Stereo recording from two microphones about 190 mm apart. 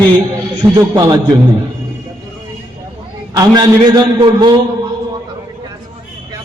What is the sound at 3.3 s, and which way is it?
A man's voice, 20° right (ahead or behind).